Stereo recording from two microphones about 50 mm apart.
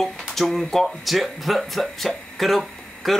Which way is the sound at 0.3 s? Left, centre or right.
Centre.